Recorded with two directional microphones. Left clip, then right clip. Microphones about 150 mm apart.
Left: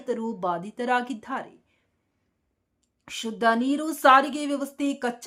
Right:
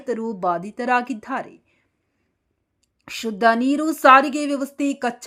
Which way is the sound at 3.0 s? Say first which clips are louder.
Right 5 dB; 25° right (ahead or behind).